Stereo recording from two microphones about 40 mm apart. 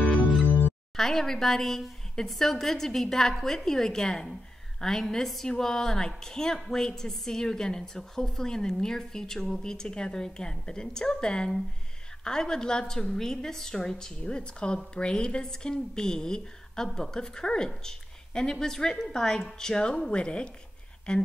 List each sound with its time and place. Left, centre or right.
0.5 s music: right
0.9 s a woman's voice: centre
14.2 s a woman's voice: left